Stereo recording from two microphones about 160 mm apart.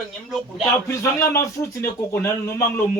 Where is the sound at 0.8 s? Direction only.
15° left (ahead or behind).